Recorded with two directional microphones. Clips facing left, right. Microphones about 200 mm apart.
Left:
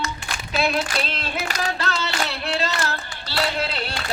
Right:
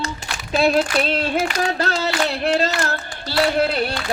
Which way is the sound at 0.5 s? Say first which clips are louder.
Right 6 dB; 45° right (ahead or behind).